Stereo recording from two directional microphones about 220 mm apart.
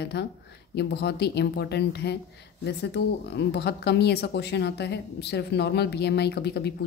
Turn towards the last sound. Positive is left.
turn(degrees=50)  # may be behind; listen again after turning